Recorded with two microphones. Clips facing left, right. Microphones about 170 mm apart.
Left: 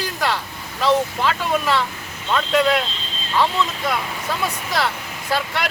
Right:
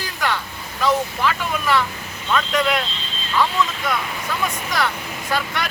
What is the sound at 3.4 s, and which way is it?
Speech, 30° left (ahead or behind).